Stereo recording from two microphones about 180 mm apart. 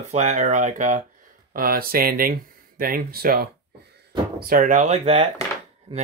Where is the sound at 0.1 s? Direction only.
40° right (ahead or behind).